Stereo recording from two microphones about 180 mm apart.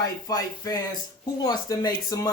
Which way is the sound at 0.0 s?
20° left (ahead or behind).